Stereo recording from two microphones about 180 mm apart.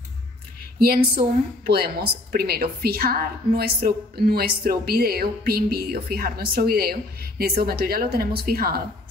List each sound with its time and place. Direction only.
0.7 s a woman's voice: 55° right (ahead or behind)